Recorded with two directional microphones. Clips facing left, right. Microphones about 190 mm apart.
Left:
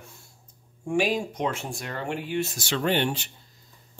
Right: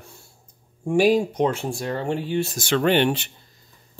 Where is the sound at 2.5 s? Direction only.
60° right (ahead or behind).